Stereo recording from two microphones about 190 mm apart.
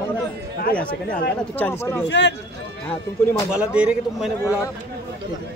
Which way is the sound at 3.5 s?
5° right (ahead or behind).